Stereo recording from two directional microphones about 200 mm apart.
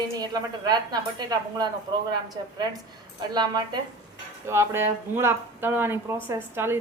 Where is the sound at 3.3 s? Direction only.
20° right (ahead or behind).